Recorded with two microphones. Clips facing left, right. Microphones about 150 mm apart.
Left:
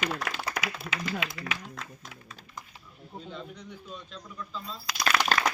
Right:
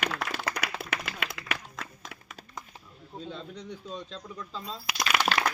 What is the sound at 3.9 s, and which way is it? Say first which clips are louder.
Speech: right 3 dB; 35° right (ahead or behind).